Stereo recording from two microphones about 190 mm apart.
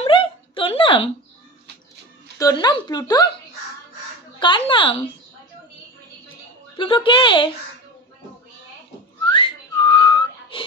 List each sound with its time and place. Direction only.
0.0 s a sound: 25° left (ahead or behind)
2.3 s speech: 20° left (ahead or behind)
4.4 s speech: 25° left (ahead or behind)
6.8 s speech: 25° left (ahead or behind)
9.3 s whistling: 25° left (ahead or behind)